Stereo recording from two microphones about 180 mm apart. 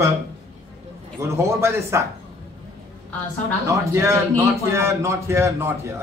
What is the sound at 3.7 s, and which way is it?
A man's voice, 15° right (ahead or behind).